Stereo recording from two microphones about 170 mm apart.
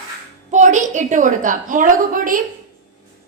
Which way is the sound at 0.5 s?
45° right (ahead or behind).